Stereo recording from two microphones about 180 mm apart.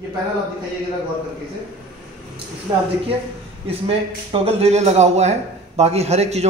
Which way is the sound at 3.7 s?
30° right (ahead or behind).